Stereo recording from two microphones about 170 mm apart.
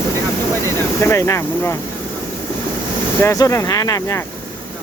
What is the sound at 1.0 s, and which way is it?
Speech, 15° left (ahead or behind).